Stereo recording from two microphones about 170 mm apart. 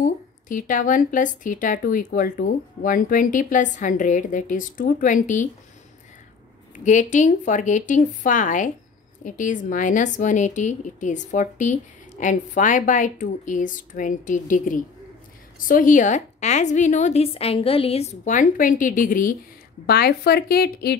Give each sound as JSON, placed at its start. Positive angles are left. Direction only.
{"t": 0.0, "sound": "speech", "side_deg": 50}
{"t": 6.8, "sound": "speech", "side_deg": 45}
{"t": 19.9, "sound": "a woman's voice", "side_deg": 65}